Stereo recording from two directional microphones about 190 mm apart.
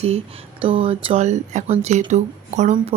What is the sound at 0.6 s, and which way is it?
A woman's voice, 30° right (ahead or behind).